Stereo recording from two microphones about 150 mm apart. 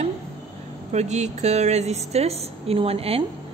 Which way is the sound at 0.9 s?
50° right (ahead or behind).